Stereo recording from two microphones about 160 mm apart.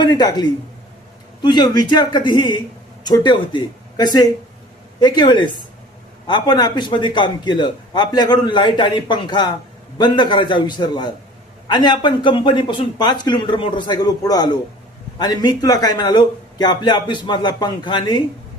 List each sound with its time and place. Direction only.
0.0 s a man's voice: 25° left (ahead or behind)